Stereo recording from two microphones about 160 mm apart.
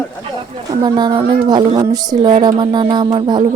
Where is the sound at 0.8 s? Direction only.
25° right (ahead or behind).